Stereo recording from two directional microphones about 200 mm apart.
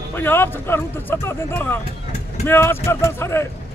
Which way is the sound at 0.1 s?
10° left (ahead or behind).